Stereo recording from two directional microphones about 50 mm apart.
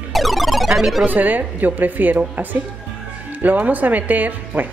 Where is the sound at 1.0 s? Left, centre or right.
Right.